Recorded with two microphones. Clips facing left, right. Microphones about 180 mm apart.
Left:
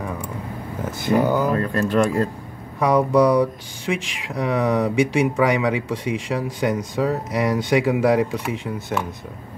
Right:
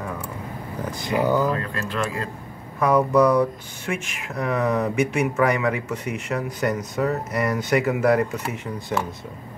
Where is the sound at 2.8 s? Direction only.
15° left (ahead or behind).